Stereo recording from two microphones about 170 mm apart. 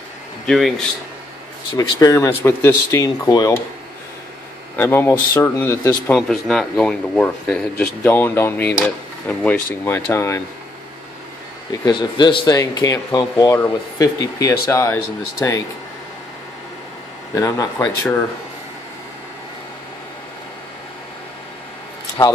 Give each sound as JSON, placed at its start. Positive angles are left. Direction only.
{"t": 0.5, "sound": "speech", "side_deg": 0}
{"t": 1.8, "sound": "speech", "side_deg": 20}
{"t": 4.7, "sound": "speech", "side_deg": 10}
{"t": 11.7, "sound": "speech", "side_deg": 25}
{"t": 17.3, "sound": "speech", "side_deg": 20}